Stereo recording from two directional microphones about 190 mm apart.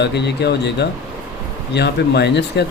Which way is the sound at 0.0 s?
60° left (ahead or behind).